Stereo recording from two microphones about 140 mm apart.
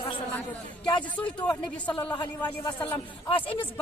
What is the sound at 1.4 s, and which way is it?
Speech, 30° left (ahead or behind).